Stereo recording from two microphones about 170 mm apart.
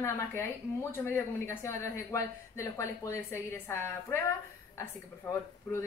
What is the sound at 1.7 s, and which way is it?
A woman's voice, 15° left (ahead or behind).